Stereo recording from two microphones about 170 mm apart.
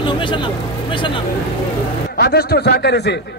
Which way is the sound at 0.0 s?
30° left (ahead or behind).